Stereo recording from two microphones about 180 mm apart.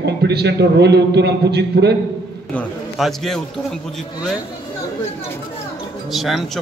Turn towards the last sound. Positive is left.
turn(degrees=0)  # may be behind; listen again after turning